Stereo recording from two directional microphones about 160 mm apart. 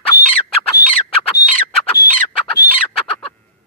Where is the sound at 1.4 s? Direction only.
90° left.